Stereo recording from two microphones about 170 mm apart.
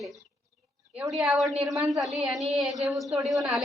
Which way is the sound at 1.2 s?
Centre (ahead or behind).